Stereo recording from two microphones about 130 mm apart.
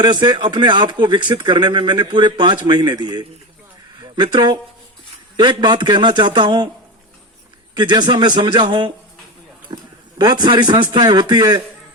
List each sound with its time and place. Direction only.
0.0 s speech: 35° right (ahead or behind)
7.8 s a man's voice: 35° right (ahead or behind)